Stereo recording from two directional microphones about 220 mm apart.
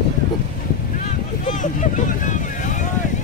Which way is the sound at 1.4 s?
35° left (ahead or behind).